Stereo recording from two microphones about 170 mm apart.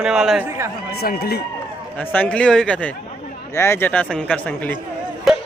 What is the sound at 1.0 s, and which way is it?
Speech, 65° left (ahead or behind).